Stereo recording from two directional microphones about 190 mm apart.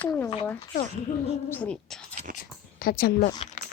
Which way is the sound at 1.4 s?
10° left (ahead or behind).